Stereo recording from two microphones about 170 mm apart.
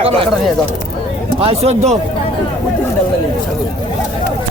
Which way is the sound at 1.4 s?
35° right (ahead or behind).